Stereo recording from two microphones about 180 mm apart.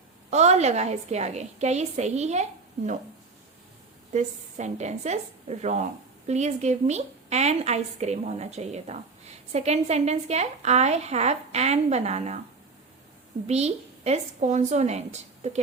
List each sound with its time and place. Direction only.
0.3 s a woman's voice: 40° right (ahead or behind)
4.1 s a woman's voice: 40° right (ahead or behind)
13.5 s a woman's voice: 35° right (ahead or behind)